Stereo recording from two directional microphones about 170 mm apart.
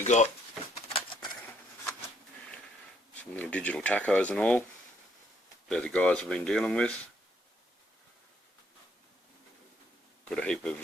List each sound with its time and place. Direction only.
0.0 s speech: 45° left (ahead or behind)
0.9 s a sound: 30° left (ahead or behind)
3.3 s speech: 10° left (ahead or behind)
5.6 s speech: 5° left (ahead or behind)
10.2 s speech: 5° left (ahead or behind)